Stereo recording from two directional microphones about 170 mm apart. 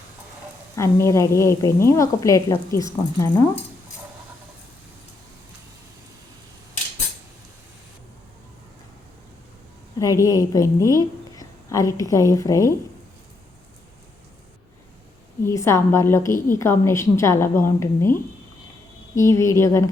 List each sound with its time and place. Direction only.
0.8 s a woman's voice: 15° left (ahead or behind)
10.0 s a woman's voice: 20° left (ahead or behind)
15.4 s a woman's voice: 15° left (ahead or behind)